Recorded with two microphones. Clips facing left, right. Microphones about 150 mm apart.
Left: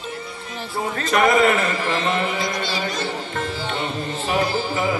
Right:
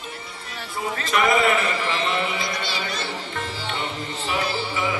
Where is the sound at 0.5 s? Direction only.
40° left (ahead or behind).